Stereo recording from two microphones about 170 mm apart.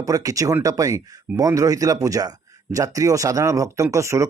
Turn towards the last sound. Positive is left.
turn(degrees=-15)  # may be behind; listen again after turning